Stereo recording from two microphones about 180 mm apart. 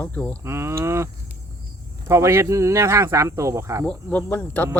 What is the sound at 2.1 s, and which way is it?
Speech, 15° right (ahead or behind).